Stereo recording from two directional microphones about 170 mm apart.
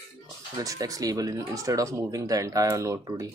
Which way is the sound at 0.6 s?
20° right (ahead or behind).